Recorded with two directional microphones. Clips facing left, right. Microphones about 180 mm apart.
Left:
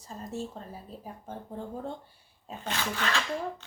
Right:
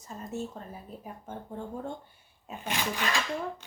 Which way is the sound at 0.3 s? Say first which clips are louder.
Right 1 dB; 30° left (ahead or behind).